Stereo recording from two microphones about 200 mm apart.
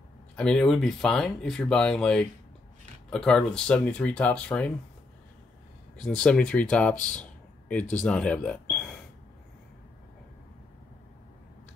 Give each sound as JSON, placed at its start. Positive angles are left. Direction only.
{"t": 0.4, "sound": "speech", "side_deg": 5}
{"t": 5.9, "sound": "speech", "side_deg": 5}